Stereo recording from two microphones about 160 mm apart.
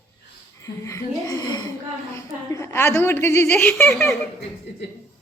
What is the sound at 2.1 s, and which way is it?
A woman's voice, 15° left (ahead or behind).